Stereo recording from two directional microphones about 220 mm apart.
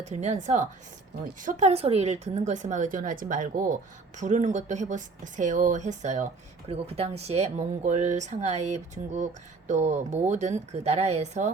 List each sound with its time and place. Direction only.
0.0 s speech: 30° right (ahead or behind)